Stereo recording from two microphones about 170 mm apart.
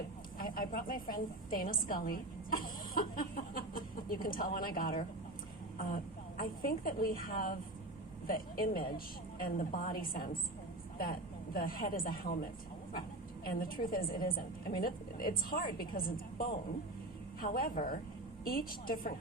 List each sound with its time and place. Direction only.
0.3 s a woman's voice: 60° left (ahead or behind)
13.5 s a woman's voice: 60° left (ahead or behind)